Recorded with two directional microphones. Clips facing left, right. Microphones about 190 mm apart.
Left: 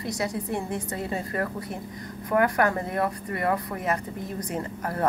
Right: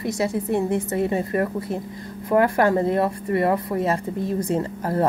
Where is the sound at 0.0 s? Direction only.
25° right (ahead or behind).